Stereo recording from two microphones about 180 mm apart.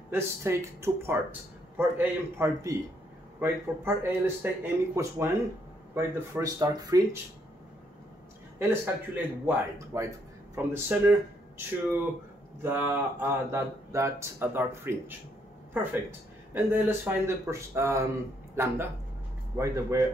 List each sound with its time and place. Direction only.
0.1 s speech: 15° right (ahead or behind)
8.5 s speech: 10° right (ahead or behind)